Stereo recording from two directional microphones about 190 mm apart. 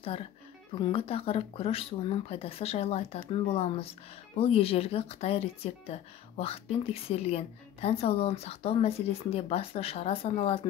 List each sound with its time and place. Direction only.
0.7 s speech: 30° left (ahead or behind)